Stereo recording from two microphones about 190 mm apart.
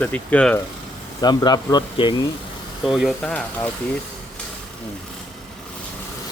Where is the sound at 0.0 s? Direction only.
5° left (ahead or behind).